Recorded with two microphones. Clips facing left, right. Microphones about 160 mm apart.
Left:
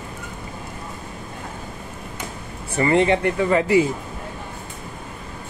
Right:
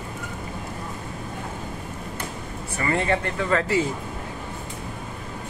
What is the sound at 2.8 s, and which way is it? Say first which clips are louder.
Speech: left 6 dB; 20° left (ahead or behind).